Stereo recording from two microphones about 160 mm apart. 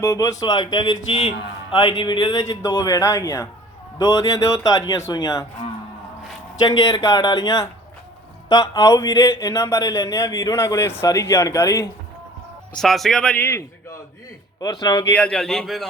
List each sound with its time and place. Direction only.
0.0 s speech: 20° left (ahead or behind)
6.6 s speech: 20° left (ahead or behind)
12.7 s speech: centre (ahead or behind); by 15.0 s 25° left (ahead or behind)
15.1 s speech: 5° left (ahead or behind)